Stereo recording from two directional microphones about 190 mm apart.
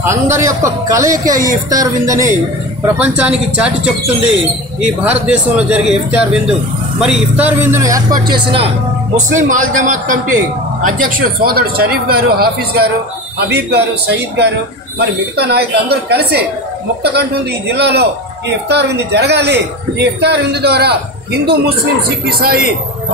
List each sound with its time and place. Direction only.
0.0 s speech: 15° right (ahead or behind)
5.0 s a man's voice: 5° right (ahead or behind); by 21.7 s 55° right (ahead or behind)